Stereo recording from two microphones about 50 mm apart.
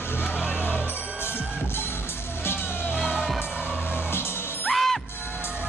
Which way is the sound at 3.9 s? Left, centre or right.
Left.